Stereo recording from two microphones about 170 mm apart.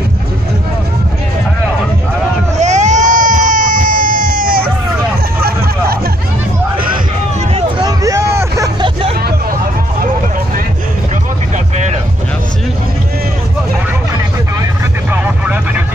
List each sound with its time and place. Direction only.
2.5 s baby cry: 45° right (ahead or behind)
7.8 s vehicle: 20° right (ahead or behind)
11.5 s vehicle: 45° right (ahead or behind)
15.0 s vehicle: 10° right (ahead or behind)